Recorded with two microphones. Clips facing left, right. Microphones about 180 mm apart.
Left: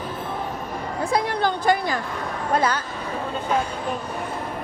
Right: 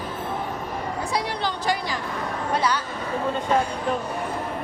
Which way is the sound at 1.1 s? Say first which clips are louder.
Left 7 dB; 50° left (ahead or behind).